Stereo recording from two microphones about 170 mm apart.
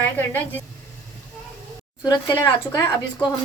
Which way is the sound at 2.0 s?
25° left (ahead or behind).